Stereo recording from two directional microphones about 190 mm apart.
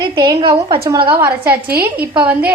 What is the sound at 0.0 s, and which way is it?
Speech, 20° right (ahead or behind).